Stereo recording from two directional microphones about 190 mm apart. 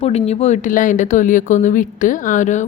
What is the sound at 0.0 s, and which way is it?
Speech, 30° left (ahead or behind).